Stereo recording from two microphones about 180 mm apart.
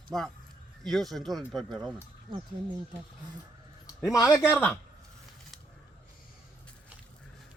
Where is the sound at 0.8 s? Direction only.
Centre (ahead or behind).